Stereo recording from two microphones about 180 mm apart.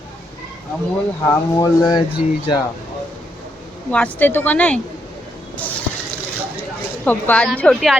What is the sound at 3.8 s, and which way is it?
Speech, 10° left (ahead or behind).